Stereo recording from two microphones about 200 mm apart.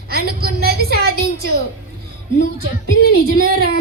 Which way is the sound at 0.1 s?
50° right (ahead or behind).